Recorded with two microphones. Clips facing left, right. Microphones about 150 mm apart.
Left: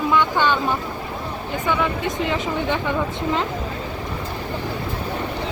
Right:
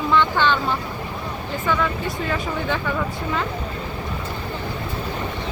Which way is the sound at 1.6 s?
15° left (ahead or behind).